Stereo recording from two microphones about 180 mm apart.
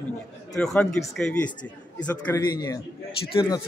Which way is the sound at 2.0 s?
15° left (ahead or behind).